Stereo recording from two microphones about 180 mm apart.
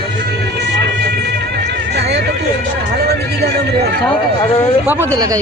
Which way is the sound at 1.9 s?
65° right (ahead or behind).